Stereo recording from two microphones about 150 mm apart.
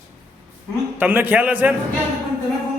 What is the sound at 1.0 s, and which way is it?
Speech, 10° right (ahead or behind).